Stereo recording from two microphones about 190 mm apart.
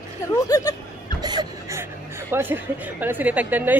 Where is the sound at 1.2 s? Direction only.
20° right (ahead or behind).